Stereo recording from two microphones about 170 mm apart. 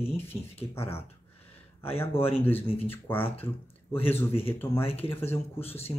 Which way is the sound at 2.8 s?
10° left (ahead or behind).